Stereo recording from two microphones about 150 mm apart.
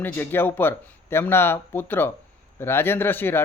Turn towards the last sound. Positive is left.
turn(degrees=15)  # may be behind; listen again after turning